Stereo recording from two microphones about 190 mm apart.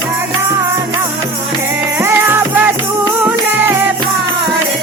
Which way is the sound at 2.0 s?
10° right (ahead or behind).